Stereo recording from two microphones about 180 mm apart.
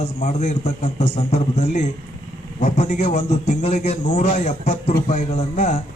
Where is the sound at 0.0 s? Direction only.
40° left (ahead or behind).